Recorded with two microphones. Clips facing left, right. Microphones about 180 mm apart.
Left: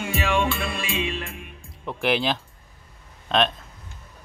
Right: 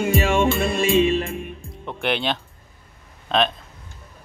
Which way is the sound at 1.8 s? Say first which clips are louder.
Left 1 dB; centre (ahead or behind).